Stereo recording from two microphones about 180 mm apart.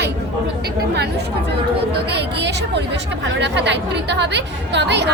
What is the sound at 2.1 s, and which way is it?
A woman's voice, 70° right (ahead or behind).